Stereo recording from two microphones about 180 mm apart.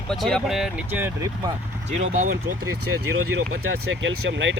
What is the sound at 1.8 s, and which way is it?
Speech, 45° right (ahead or behind).